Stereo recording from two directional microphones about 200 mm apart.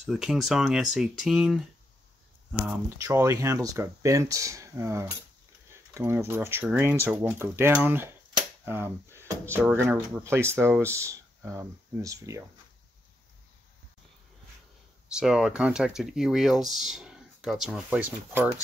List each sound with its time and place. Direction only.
0.0 s speech: centre (ahead or behind)
2.6 s speech: 10° right (ahead or behind)
8.4 s dishes: 10° right (ahead or behind)
10.1 s speech: 15° right (ahead or behind)
15.1 s speech: 5° right (ahead or behind)